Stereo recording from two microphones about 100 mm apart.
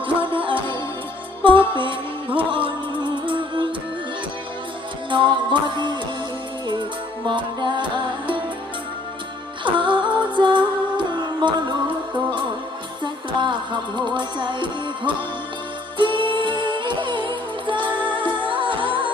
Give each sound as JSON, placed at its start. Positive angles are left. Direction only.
{"t": 0.0, "sound": "music", "side_deg": -60}
{"t": 5.1, "sound": "music", "side_deg": -55}
{"t": 9.7, "sound": "music", "side_deg": -55}
{"t": 13.0, "sound": "music", "side_deg": -50}